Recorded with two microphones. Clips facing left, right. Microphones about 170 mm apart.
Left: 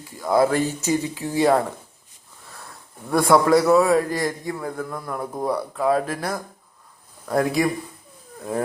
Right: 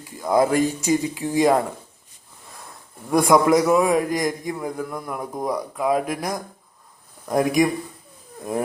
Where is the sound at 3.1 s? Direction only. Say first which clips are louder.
Even; 15° right (ahead or behind).